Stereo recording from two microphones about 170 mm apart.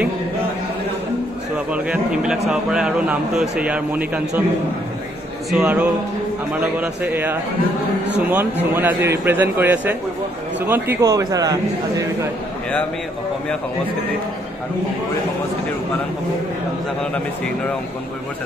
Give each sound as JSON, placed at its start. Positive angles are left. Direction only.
{"t": 1.7, "sound": "a man's voice", "side_deg": -5}
{"t": 5.5, "sound": "a man's voice", "side_deg": -5}